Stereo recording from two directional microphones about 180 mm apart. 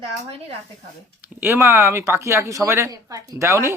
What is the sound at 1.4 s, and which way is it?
A woman's voice, 15° right (ahead or behind).